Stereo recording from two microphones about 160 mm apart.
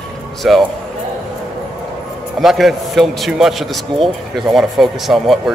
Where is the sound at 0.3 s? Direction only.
Centre (ahead or behind).